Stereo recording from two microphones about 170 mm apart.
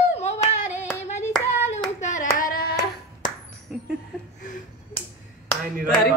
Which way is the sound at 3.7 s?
5° right (ahead or behind).